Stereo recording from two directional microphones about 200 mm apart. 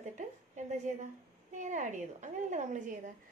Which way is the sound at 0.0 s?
35° right (ahead or behind).